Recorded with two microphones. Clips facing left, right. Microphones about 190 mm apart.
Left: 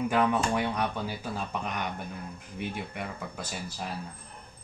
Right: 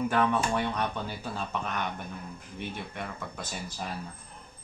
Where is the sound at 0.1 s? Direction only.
10° left (ahead or behind).